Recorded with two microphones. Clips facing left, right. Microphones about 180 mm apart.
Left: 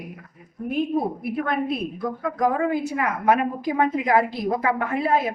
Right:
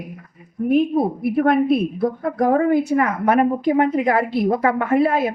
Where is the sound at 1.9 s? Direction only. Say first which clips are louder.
Right 6 dB; 35° right (ahead or behind).